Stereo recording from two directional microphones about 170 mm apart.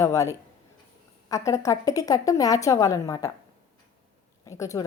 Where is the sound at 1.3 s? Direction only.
20° left (ahead or behind).